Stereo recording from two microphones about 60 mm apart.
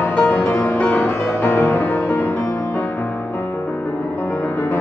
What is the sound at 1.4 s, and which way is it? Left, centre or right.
Music, left.